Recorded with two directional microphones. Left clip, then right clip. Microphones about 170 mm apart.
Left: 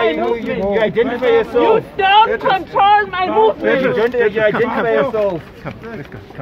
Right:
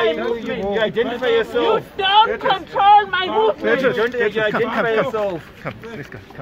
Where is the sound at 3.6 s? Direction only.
75° right (ahead or behind).